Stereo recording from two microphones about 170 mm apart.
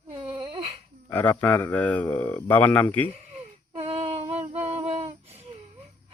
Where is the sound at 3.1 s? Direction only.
40° right (ahead or behind).